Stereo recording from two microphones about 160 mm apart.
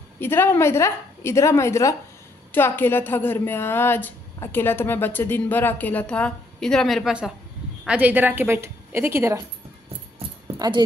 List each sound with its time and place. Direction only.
0.2 s a woman's voice: 15° left (ahead or behind); by 9.4 s 15° right (ahead or behind)